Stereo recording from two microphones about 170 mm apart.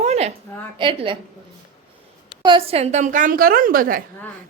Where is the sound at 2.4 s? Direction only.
35° right (ahead or behind); by 4.0 s 55° right (ahead or behind).